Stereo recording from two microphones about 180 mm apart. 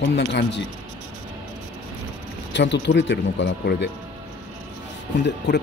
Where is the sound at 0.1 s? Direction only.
75° left (ahead or behind).